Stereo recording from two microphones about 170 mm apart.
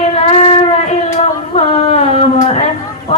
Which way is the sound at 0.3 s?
35° left (ahead or behind).